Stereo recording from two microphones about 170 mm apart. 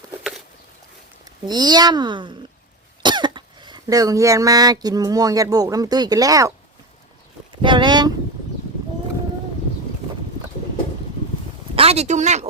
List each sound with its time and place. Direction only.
0.2 s a sound: centre (ahead or behind)
1.2 s speech: 25° right (ahead or behind)
7.6 s speech: 25° right (ahead or behind)
11.7 s speech: 35° right (ahead or behind)